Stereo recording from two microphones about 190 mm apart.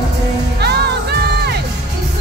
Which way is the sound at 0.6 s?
60° right (ahead or behind).